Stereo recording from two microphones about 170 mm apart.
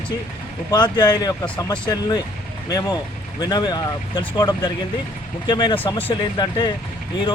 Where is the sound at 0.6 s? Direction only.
25° left (ahead or behind).